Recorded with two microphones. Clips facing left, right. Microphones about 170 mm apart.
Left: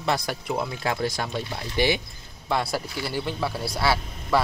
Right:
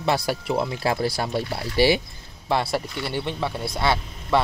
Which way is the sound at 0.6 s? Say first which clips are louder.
Right 1 dB; 30° right (ahead or behind).